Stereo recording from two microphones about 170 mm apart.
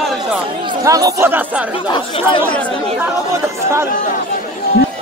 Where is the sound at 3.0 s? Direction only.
15° right (ahead or behind).